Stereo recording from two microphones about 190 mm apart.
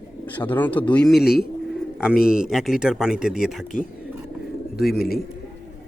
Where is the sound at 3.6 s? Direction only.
45° left (ahead or behind).